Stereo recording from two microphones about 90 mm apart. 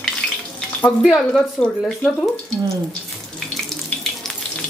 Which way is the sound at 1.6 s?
10° left (ahead or behind).